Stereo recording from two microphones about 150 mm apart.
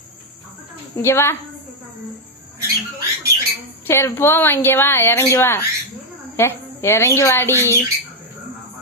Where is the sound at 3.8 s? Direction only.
15° left (ahead or behind).